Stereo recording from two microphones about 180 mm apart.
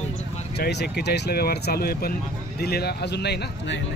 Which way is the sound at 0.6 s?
65° left (ahead or behind).